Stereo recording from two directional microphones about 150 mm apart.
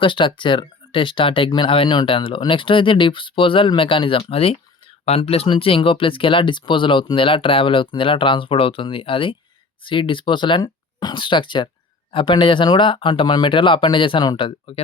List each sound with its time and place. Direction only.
0.0 s speech: 35° left (ahead or behind)